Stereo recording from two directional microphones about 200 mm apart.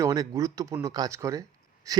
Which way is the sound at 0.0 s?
15° right (ahead or behind).